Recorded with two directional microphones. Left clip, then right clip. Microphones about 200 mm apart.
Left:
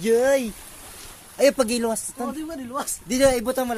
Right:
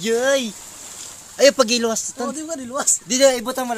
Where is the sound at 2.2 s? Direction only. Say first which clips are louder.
Right 4 dB; 35° right (ahead or behind).